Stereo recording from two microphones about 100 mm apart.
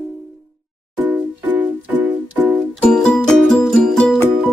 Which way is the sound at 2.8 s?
5° left (ahead or behind).